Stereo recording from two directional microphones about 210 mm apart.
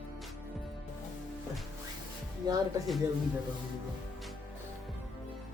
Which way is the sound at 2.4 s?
20° right (ahead or behind).